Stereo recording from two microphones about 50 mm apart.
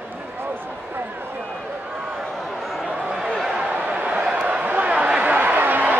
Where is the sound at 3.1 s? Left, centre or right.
Centre; by 5.9 s right.